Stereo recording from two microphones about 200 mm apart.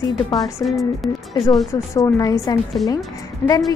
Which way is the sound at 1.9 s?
15° left (ahead or behind).